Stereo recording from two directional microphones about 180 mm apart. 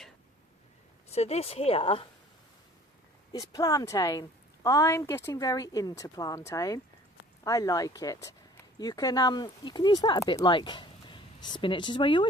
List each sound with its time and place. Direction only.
1.1 s speech: 35° left (ahead or behind)
3.3 s a woman's voice: 20° left (ahead or behind)